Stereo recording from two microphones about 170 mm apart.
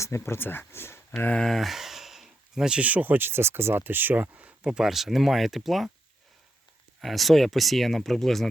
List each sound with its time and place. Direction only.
0.0 s speech: 15° left (ahead or behind); by 5.9 s centre (ahead or behind)
7.0 s speech: centre (ahead or behind)